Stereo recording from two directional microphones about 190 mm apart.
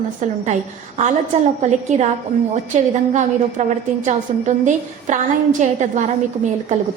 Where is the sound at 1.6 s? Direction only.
40° right (ahead or behind).